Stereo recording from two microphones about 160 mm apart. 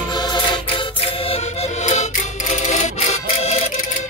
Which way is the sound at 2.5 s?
50° left (ahead or behind).